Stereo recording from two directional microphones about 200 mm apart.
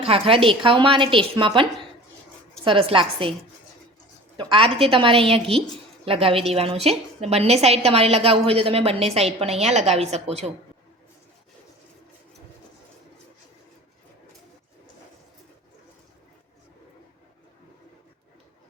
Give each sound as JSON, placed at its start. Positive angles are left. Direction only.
{"t": 0.0, "sound": "a woman's voice", "side_deg": -30}
{"t": 2.6, "sound": "a woman's voice", "side_deg": -25}
{"t": 4.4, "sound": "a woman's voice", "side_deg": -25}